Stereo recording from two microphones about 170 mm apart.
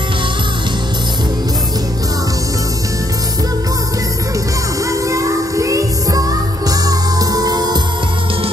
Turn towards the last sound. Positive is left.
turn(degrees=-25)  # may be behind; listen again after turning